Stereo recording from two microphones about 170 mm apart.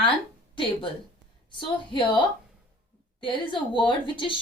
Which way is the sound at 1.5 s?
30° left (ahead or behind).